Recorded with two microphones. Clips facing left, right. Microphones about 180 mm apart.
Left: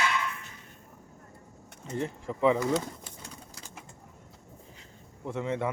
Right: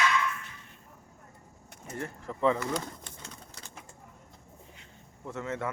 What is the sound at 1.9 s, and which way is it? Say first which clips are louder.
Speech: left 5 dB; 20° left (ahead or behind).